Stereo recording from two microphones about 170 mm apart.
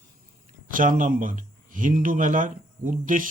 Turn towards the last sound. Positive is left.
turn(degrees=-50)  # may be behind; listen again after turning